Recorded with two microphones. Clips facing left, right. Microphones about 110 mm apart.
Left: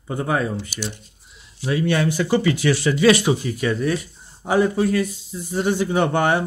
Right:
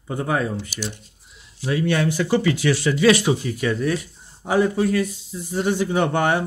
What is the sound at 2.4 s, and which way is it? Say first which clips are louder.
Speech: left 1 dB; 30° left (ahead or behind).